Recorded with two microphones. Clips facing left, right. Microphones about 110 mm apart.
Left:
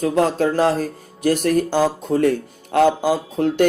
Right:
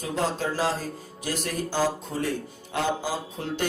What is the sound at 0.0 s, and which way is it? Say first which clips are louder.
Speech: left 10 dB; 60° left (ahead or behind).